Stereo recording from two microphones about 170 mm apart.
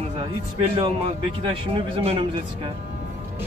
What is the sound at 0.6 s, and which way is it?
Speech, 35° right (ahead or behind).